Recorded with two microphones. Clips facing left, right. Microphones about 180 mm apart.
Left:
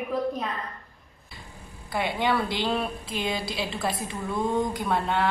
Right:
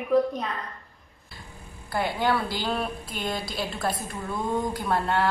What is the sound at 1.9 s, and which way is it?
A woman's voice, centre (ahead or behind).